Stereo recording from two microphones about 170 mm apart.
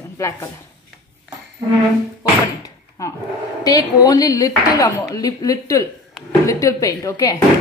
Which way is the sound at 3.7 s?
20° left (ahead or behind).